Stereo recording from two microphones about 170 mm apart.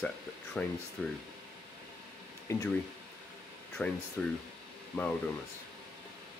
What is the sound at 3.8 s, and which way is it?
Speech, 5° left (ahead or behind).